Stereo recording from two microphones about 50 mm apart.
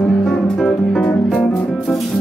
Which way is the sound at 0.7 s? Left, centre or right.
Centre.